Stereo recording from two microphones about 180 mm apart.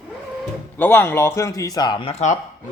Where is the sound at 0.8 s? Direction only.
10° left (ahead or behind); by 2.4 s 40° left (ahead or behind).